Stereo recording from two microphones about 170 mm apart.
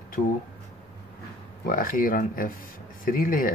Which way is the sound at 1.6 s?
55° left (ahead or behind).